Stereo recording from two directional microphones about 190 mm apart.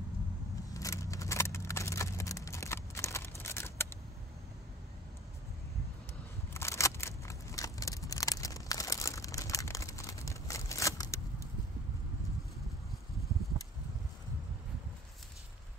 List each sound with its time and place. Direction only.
0.7 s scissors: 15° left (ahead or behind)
6.5 s scissors: 15° left (ahead or behind)